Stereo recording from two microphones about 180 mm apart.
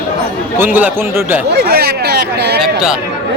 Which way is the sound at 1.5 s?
60° right (ahead or behind).